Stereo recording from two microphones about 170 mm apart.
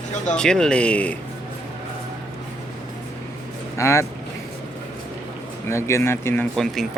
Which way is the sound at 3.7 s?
15° left (ahead or behind).